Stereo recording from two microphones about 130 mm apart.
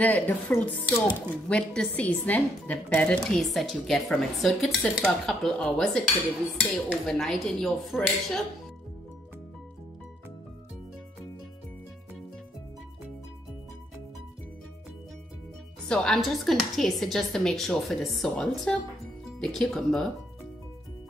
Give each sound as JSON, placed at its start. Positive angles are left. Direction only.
{"t": 0.0, "sound": "speech", "side_deg": 15}
{"t": 7.1, "sound": "speech", "side_deg": 5}
{"t": 15.9, "sound": "speech", "side_deg": 5}